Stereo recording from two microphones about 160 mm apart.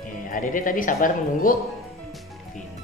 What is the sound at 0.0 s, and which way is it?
Speech, 55° left (ahead or behind).